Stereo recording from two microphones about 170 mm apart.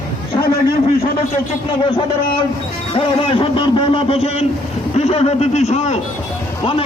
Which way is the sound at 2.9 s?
35° left (ahead or behind).